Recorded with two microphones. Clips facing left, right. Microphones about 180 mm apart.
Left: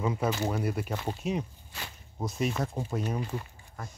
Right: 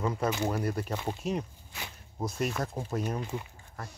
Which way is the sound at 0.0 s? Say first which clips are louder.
Even; 5° left (ahead or behind).